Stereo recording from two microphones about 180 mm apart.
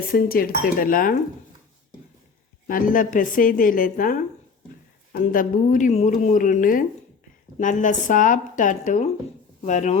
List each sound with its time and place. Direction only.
0.1 s speech: 55° left (ahead or behind)
2.6 s speech: 50° left (ahead or behind)
5.2 s speech: 50° left (ahead or behind)